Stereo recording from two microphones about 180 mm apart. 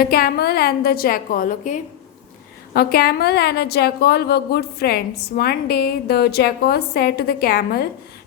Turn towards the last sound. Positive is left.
turn(degrees=60)  # may be behind; listen again after turning